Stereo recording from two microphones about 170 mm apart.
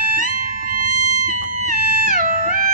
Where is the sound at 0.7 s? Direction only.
50° right (ahead or behind).